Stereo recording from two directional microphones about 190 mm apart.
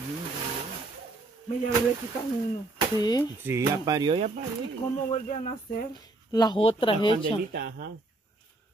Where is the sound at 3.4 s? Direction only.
15° right (ahead or behind).